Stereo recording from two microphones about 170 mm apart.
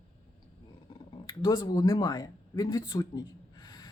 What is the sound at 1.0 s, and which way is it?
Speech, 25° left (ahead or behind).